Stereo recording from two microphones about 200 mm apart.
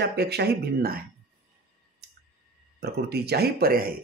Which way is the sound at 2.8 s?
50° right (ahead or behind).